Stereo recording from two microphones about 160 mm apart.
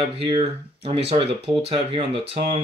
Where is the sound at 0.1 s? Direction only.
35° right (ahead or behind).